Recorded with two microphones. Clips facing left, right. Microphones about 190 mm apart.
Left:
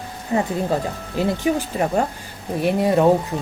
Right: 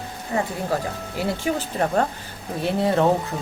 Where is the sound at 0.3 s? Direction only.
25° left (ahead or behind).